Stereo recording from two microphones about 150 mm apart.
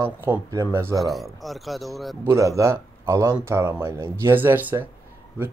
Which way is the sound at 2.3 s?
20° right (ahead or behind).